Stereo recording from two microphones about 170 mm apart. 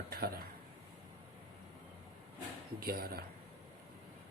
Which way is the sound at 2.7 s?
65° right (ahead or behind).